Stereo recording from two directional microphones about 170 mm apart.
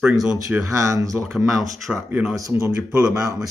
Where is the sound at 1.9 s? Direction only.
Centre (ahead or behind).